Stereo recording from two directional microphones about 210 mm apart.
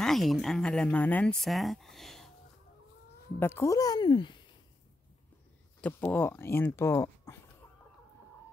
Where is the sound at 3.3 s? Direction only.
10° left (ahead or behind).